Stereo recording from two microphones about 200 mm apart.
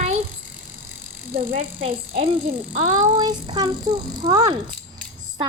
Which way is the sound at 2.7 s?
35° right (ahead or behind).